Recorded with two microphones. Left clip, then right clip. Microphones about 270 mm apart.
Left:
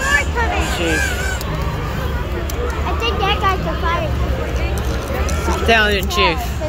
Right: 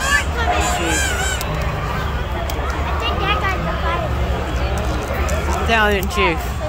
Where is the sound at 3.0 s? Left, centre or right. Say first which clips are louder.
Left 3 dB; left.